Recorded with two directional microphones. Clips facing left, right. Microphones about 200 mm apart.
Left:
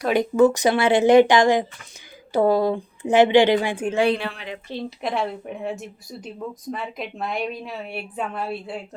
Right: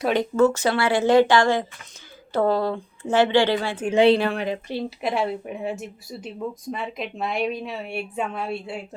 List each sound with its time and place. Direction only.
0.1 s a woman's voice: 15° left (ahead or behind)
3.9 s a woman's voice: 25° right (ahead or behind)
4.2 s speech: 45° right (ahead or behind)
4.7 s a woman's voice: 5° right (ahead or behind)